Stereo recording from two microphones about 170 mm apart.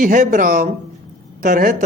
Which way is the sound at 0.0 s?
50° right (ahead or behind).